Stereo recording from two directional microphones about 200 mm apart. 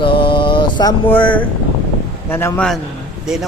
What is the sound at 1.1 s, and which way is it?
A man's voice, 5° left (ahead or behind).